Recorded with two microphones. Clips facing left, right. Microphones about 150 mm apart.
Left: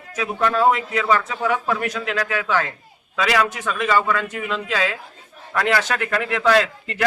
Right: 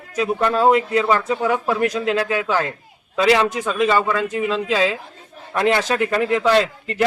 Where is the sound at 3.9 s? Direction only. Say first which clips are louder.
Right 2 dB; 20° right (ahead or behind).